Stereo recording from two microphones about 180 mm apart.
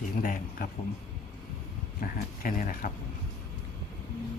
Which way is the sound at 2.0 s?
50° left (ahead or behind).